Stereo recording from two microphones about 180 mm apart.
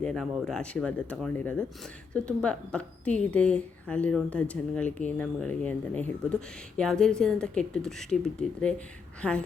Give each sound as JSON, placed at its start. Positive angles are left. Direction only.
{"t": 0.0, "sound": "a woman's voice", "side_deg": 0}